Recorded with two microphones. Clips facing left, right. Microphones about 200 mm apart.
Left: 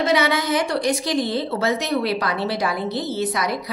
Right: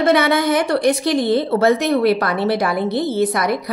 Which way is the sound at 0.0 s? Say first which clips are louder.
Right 5 dB; 55° right (ahead or behind).